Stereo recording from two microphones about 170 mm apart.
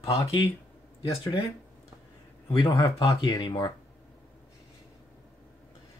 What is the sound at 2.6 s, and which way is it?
Speech, 20° left (ahead or behind).